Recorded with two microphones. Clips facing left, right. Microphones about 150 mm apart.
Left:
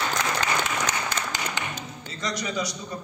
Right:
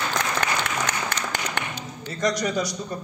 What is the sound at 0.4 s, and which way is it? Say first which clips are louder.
Applause: right 1 dB; 60° right (ahead or behind).